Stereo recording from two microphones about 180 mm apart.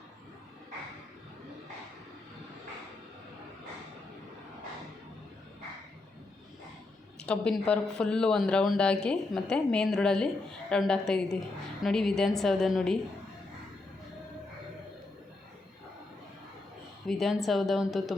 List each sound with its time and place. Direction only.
7.2 s speech: 5° left (ahead or behind)
17.1 s speech: centre (ahead or behind)